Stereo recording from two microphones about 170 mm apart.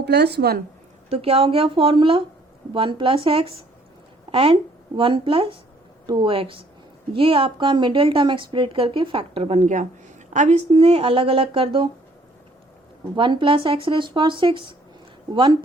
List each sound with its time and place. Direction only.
0.0 s speech: 75° right (ahead or behind)
1.1 s a woman's voice: 35° right (ahead or behind)
13.1 s speech: 30° right (ahead or behind)